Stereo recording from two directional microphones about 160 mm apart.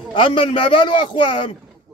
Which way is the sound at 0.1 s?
30° left (ahead or behind).